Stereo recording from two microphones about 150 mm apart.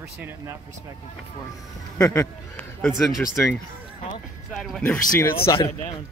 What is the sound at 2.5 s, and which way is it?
Speech, centre (ahead or behind).